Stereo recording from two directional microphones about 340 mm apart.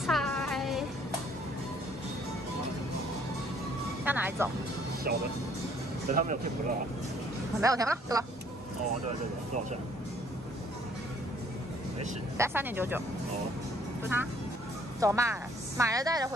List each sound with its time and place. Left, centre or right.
0.0 s music: centre
4.0 s speech: centre
6.1 s speech: right
7.6 s speech: centre
12.4 s speech: centre
15.0 s speech: centre